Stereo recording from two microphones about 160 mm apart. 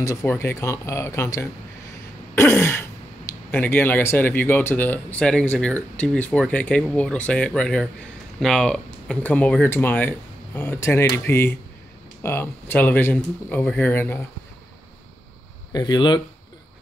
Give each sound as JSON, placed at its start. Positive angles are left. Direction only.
{"t": 0.0, "sound": "speech", "side_deg": 20}
{"t": 15.7, "sound": "speech", "side_deg": 25}